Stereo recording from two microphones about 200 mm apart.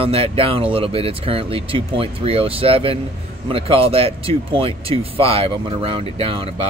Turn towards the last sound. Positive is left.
turn(degrees=-30)  # may be behind; listen again after turning